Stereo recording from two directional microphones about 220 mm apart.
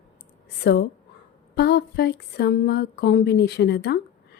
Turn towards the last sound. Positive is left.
turn(degrees=45)  # may be behind; listen again after turning